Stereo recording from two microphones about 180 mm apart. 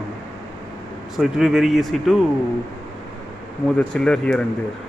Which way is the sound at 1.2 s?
5° right (ahead or behind).